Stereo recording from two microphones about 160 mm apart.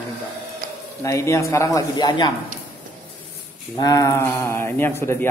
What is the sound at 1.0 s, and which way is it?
Speech, 20° left (ahead or behind).